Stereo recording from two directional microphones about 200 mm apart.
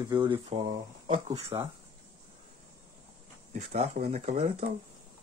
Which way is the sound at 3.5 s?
35° right (ahead or behind).